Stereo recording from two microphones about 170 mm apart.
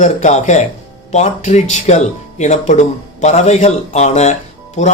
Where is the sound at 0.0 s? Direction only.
45° left (ahead or behind).